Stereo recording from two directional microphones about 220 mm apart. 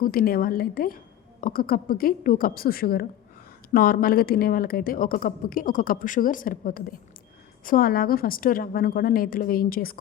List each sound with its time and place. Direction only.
0.0 s a woman's voice: 40° left (ahead or behind)